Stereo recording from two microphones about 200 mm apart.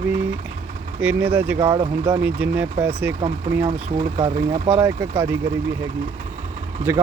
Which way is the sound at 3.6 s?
25° right (ahead or behind).